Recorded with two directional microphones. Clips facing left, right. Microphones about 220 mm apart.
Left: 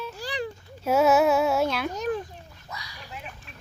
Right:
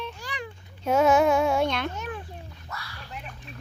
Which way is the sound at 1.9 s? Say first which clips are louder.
Left 7 dB; 40° left (ahead or behind).